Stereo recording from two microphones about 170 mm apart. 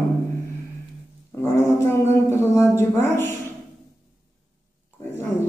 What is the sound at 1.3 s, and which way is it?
Speech, 15° left (ahead or behind).